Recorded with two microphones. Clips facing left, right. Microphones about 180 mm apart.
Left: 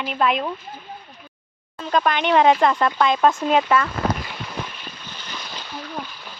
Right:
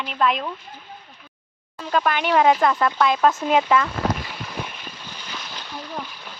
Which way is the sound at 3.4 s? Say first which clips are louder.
Even; 10° right (ahead or behind).